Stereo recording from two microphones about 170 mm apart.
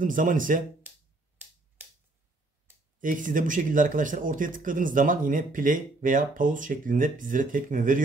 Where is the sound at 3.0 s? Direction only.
50° right (ahead or behind).